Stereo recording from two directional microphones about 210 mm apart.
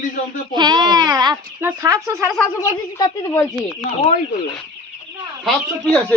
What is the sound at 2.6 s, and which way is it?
Speech, 15° left (ahead or behind).